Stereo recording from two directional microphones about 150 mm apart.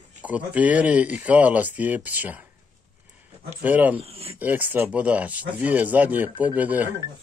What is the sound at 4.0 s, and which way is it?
Speech, 40° right (ahead or behind).